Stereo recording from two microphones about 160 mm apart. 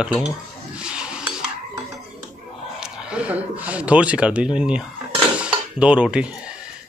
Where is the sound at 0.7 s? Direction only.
5° right (ahead or behind).